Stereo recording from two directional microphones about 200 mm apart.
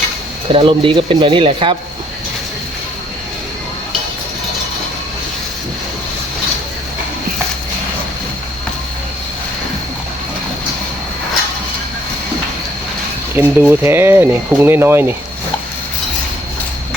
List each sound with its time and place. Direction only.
0.5 s speech: 25° right (ahead or behind)
13.3 s speech: 10° right (ahead or behind)